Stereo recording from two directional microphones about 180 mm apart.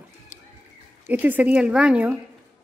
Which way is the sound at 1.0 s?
10° right (ahead or behind).